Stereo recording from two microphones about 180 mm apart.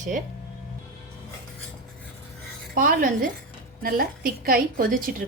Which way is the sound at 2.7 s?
50° right (ahead or behind).